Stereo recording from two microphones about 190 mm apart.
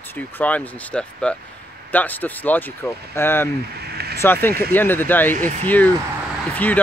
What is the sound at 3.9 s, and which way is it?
Vehicle, 55° right (ahead or behind).